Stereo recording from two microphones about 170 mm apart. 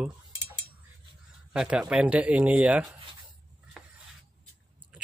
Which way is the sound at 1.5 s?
5° right (ahead or behind).